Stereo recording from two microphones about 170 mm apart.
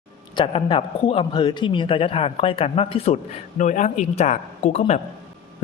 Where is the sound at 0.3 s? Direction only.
30° left (ahead or behind).